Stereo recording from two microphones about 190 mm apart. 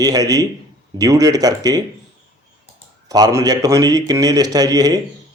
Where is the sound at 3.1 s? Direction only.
20° right (ahead or behind).